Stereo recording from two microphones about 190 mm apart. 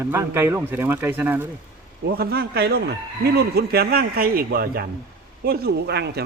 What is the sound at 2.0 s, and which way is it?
Chicken, 55° right (ahead or behind).